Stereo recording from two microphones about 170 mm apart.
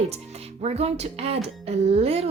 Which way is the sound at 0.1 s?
35° right (ahead or behind).